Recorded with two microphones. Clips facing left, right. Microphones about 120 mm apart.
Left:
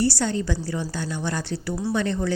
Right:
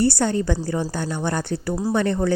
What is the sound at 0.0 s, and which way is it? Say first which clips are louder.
Speech: right 3 dB; 50° right (ahead or behind).